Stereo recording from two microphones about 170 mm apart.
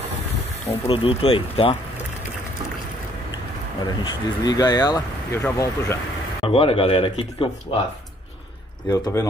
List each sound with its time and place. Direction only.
0.7 s speech: 35° left (ahead or behind)
3.8 s speech: 25° left (ahead or behind)
6.4 s speech: 35° left (ahead or behind)
8.8 s speech: 25° left (ahead or behind)